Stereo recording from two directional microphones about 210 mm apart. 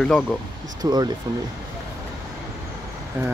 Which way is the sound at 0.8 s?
20° right (ahead or behind).